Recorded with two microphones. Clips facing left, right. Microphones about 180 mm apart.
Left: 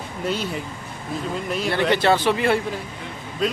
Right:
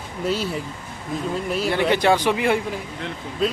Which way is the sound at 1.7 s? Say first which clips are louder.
Even; 15° right (ahead or behind).